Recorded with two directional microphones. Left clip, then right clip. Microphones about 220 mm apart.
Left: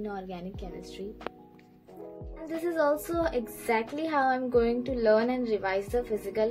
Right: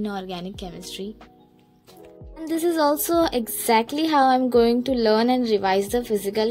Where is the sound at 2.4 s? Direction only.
30° right (ahead or behind).